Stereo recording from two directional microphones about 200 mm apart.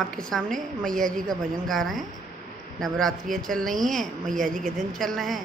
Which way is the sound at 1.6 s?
Centre (ahead or behind).